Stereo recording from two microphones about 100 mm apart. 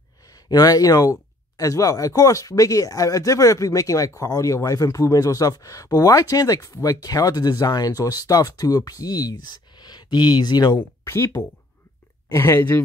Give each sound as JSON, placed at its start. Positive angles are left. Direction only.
{"t": 0.3, "sound": "speech", "side_deg": 40}
{"t": 11.1, "sound": "speech", "side_deg": 25}